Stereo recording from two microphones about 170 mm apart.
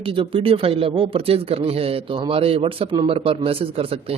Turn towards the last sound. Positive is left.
turn(degrees=-35)  # may be behind; listen again after turning